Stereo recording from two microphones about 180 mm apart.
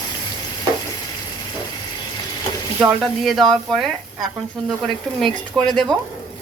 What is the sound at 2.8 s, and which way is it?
Speech, centre (ahead or behind).